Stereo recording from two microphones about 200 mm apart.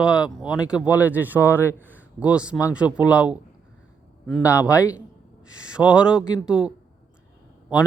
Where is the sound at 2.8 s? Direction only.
20° left (ahead or behind).